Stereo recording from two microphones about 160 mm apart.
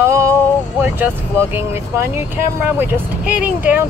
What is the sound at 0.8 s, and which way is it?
Speech, 15° right (ahead or behind).